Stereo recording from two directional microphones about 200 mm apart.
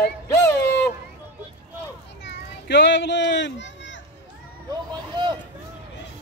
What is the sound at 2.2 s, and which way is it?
A child's voice, 60° left (ahead or behind).